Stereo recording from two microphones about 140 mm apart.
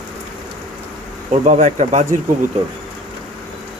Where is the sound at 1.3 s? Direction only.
55° right (ahead or behind).